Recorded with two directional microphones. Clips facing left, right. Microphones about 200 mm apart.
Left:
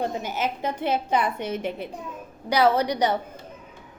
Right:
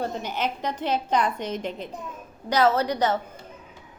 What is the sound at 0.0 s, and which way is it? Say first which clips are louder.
A woman's voice: left 1 dB; 10° left (ahead or behind).